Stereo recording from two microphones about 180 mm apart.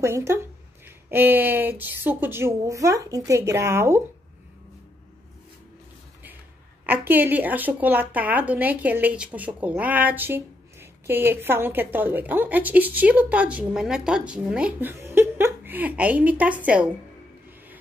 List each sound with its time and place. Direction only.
0.0 s speech: 15° right (ahead or behind)
6.9 s speech: 10° right (ahead or behind)